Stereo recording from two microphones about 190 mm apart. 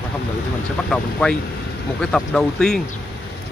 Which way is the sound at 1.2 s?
5° left (ahead or behind).